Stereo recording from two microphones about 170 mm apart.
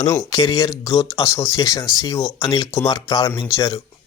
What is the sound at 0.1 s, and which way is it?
Speech, 20° left (ahead or behind).